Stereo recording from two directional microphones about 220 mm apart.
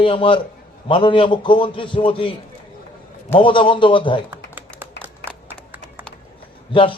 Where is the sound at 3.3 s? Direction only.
20° left (ahead or behind).